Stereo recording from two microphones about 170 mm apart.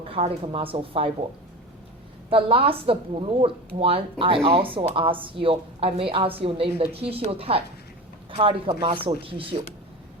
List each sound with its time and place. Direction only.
0.1 s a woman's voice: 35° right (ahead or behind)
2.3 s a woman's voice: 35° right (ahead or behind)